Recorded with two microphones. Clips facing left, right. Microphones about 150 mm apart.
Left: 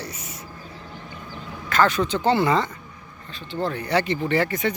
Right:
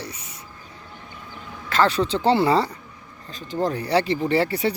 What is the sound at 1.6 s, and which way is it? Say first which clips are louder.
Speech: even; 30° right (ahead or behind).